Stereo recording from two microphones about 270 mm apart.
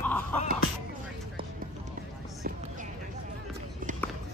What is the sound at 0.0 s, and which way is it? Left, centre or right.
Music, centre.